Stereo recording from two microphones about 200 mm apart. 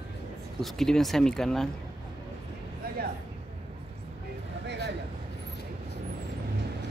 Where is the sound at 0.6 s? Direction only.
Centre (ahead or behind).